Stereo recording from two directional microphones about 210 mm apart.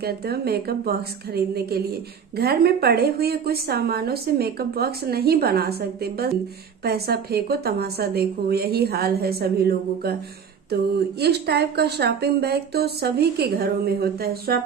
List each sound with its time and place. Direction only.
0.0 s a woman's voice: 50° right (ahead or behind)